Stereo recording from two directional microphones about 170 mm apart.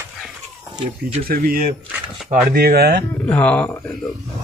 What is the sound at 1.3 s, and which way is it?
Speech, 55° right (ahead or behind).